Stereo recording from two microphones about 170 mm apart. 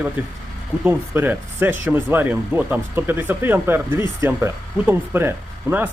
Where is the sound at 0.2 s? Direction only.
10° right (ahead or behind).